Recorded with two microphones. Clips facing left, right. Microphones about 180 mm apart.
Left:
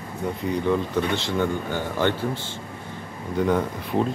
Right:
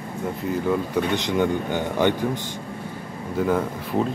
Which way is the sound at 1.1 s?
15° right (ahead or behind).